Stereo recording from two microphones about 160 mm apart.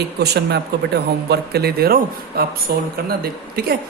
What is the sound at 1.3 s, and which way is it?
Speech, 80° right.